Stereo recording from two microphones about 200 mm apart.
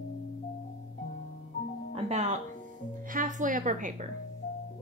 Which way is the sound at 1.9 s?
35° right (ahead or behind).